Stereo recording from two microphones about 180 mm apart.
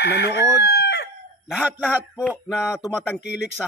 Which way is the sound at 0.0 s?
65° left (ahead or behind).